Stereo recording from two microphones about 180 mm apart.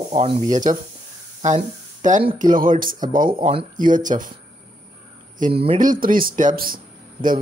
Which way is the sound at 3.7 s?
45° right (ahead or behind).